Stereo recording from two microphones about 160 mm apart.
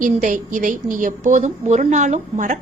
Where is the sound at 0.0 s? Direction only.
55° right (ahead or behind).